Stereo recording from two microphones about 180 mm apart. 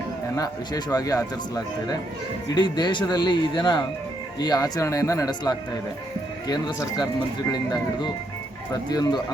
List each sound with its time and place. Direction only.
0.3 s speech: 20° left (ahead or behind)